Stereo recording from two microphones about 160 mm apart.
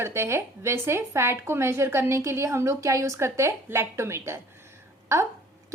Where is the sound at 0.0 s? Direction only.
15° right (ahead or behind).